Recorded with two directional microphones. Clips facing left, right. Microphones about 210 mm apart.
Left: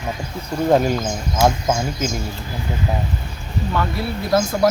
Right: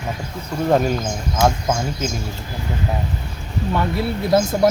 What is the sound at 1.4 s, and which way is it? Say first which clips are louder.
Speech: left 1 dB; 5° left (ahead or behind).